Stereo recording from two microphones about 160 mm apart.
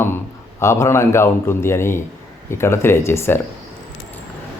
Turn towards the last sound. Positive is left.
turn(degrees=15)  # may be behind; listen again after turning